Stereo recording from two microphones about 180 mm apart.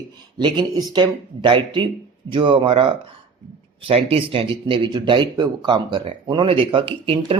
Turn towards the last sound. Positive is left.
turn(degrees=-30)  # may be behind; listen again after turning